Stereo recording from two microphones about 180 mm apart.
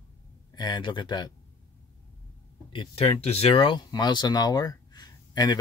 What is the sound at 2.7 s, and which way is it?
Speech, 30° left (ahead or behind).